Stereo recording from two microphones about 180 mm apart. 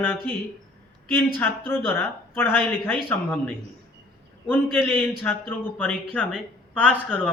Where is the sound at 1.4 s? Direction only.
10° left (ahead or behind).